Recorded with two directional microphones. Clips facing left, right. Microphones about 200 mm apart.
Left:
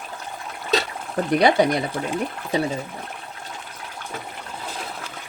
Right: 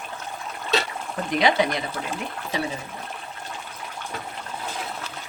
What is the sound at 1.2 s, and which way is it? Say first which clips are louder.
Speech: left 7 dB; 40° left (ahead or behind).